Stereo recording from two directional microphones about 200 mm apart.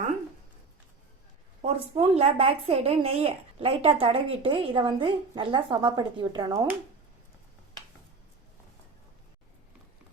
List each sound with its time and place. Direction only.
1.6 s speech: 30° right (ahead or behind)